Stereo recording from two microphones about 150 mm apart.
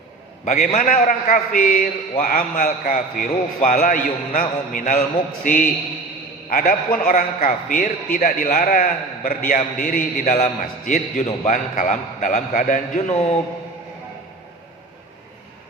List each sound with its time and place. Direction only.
0.4 s a man's voice: 55° left (ahead or behind)
0.8 s a man's voice: 75° left (ahead or behind)
10.2 s a man's voice: 50° left (ahead or behind)